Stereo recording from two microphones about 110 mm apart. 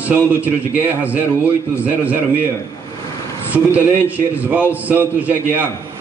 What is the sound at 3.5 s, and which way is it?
A man's voice, 15° right (ahead or behind).